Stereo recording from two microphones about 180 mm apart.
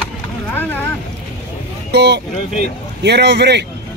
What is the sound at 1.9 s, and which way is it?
Speech, 70° right (ahead or behind).